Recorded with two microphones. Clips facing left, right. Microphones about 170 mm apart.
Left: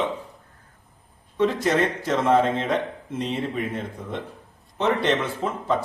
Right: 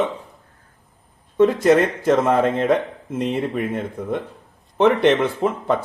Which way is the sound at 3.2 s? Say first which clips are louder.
Right 5 dB; 50° right (ahead or behind).